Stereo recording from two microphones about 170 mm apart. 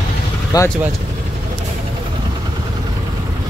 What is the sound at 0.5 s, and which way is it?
Speech, 20° left (ahead or behind).